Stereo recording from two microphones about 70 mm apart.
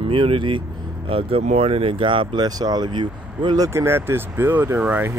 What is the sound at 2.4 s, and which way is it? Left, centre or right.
Speech, right.